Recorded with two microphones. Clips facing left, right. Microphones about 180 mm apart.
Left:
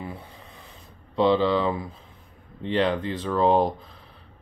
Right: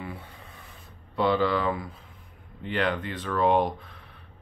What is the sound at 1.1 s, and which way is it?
Speech, 25° left (ahead or behind).